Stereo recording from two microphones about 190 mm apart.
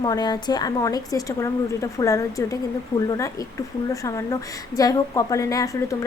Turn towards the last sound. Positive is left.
turn(degrees=15)  # may be behind; listen again after turning